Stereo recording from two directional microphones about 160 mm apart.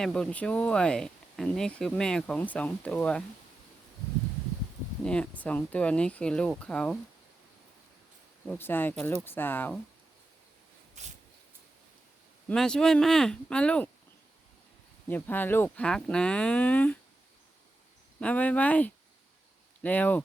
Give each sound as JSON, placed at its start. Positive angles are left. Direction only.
{"t": 0.0, "sound": "speech", "side_deg": 5}
{"t": 5.0, "sound": "speech", "side_deg": 5}
{"t": 8.4, "sound": "speech", "side_deg": 15}
{"t": 11.0, "sound": "a sound", "side_deg": -45}
{"t": 12.5, "sound": "speech", "side_deg": 5}
{"t": 15.0, "sound": "speech", "side_deg": 10}
{"t": 18.2, "sound": "speech", "side_deg": 10}